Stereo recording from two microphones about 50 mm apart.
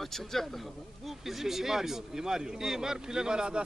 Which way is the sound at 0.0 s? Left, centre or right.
Centre.